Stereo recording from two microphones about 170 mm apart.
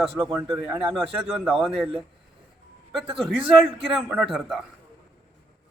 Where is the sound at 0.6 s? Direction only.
5° right (ahead or behind).